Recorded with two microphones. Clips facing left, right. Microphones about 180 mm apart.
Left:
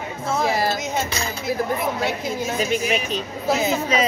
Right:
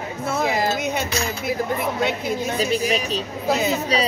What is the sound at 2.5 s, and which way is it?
A woman's voice, 35° right (ahead or behind).